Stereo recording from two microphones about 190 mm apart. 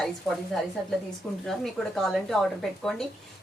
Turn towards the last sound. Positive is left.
turn(degrees=5)  # may be behind; listen again after turning